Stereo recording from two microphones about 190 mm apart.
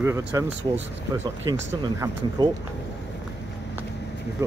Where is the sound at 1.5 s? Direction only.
20° right (ahead or behind).